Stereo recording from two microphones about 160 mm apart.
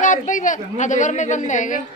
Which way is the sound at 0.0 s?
55° left (ahead or behind).